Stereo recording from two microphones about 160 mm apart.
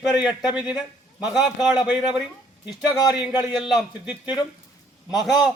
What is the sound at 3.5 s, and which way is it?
A man's voice, centre (ahead or behind).